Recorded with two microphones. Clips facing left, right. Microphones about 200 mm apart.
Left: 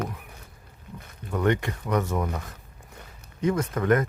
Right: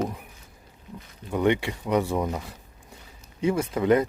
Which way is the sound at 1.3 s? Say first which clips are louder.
Right 2 dB; 10° right (ahead or behind).